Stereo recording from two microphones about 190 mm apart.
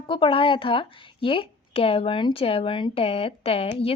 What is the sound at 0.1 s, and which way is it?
Speech, 25° left (ahead or behind).